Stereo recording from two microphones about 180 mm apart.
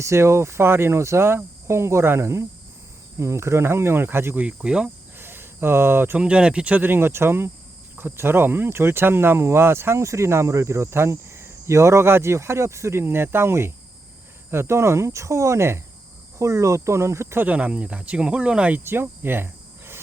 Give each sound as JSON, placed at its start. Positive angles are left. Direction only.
{"t": 0.0, "sound": "speech", "side_deg": -15}